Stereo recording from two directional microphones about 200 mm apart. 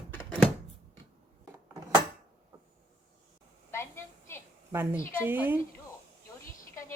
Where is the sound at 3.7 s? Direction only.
10° left (ahead or behind).